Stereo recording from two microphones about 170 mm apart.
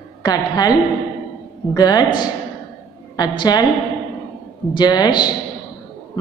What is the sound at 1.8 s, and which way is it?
A woman's voice, 25° left (ahead or behind).